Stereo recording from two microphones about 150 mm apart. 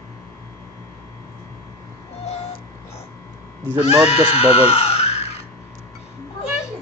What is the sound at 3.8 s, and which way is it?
Speech, 45° left (ahead or behind).